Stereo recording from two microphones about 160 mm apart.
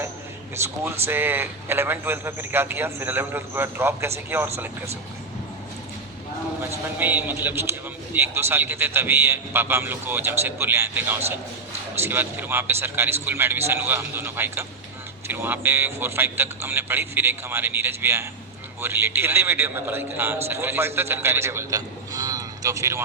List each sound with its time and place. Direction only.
0.5 s a man's voice: 15° right (ahead or behind)
6.6 s a man's voice: 10° right (ahead or behind)